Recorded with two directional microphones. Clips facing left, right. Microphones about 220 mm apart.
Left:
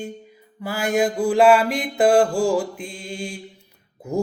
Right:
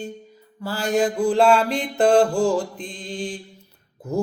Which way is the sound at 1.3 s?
5° left (ahead or behind).